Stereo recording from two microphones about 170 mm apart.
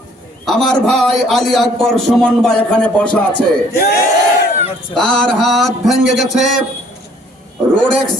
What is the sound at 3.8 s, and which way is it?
Speech, 65° left (ahead or behind).